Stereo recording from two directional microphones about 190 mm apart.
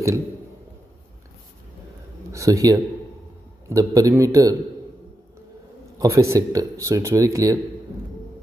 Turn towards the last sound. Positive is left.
turn(degrees=-15)  # may be behind; listen again after turning